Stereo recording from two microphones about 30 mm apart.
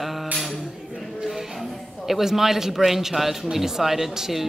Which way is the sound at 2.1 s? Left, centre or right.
Centre.